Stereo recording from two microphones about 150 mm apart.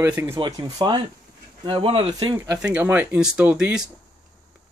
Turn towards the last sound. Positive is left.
turn(degrees=-5)  # may be behind; listen again after turning